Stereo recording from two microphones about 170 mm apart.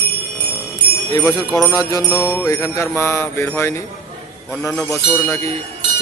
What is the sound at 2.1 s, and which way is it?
Jingle bell, 15° left (ahead or behind).